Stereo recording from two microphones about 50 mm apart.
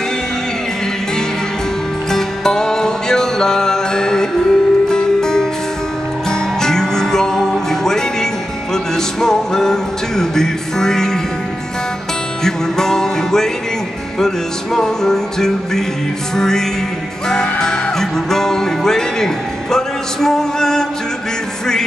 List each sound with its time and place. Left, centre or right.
2.0 s music: centre
6.6 s music: centre
12.4 s music: centre